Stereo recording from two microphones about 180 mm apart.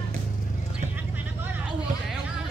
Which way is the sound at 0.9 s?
10° right (ahead or behind).